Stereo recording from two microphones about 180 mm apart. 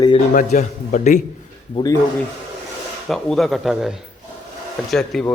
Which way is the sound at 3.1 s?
Centre (ahead or behind).